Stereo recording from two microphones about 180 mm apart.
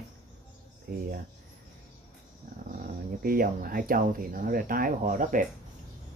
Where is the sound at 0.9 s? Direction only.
55° right (ahead or behind).